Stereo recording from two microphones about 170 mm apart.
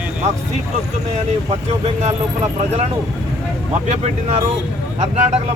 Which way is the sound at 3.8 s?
40° right (ahead or behind).